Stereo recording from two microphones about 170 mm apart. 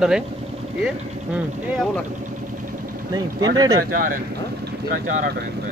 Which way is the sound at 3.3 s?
20° right (ahead or behind).